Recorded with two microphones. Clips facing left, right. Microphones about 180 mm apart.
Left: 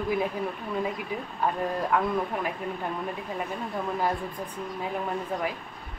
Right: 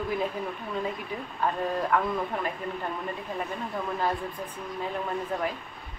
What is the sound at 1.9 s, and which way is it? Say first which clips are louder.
Speech: left 1 dB; 10° left (ahead or behind).